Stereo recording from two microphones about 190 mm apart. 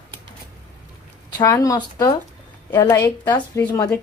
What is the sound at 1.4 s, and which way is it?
A woman's voice, 15° left (ahead or behind).